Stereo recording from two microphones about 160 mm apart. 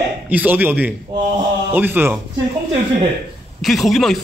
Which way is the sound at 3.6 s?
Centre (ahead or behind).